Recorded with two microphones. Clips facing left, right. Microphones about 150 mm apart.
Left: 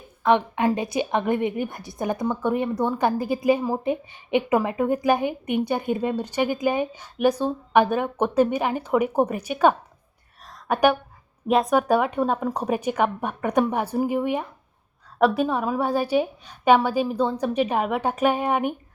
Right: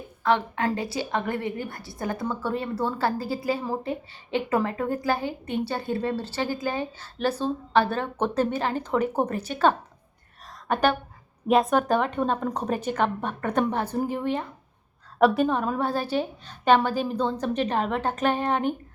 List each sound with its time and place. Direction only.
0.2 s a woman's voice: 20° left (ahead or behind)
10.4 s a sound: 10° left (ahead or behind)
11.4 s a woman's voice: centre (ahead or behind)
15.2 s a woman's voice: centre (ahead or behind)